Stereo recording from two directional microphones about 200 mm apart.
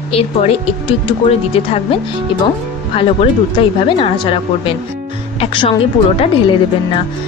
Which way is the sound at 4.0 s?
25° left (ahead or behind).